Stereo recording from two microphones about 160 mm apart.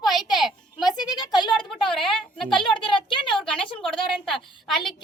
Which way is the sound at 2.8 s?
30° left (ahead or behind).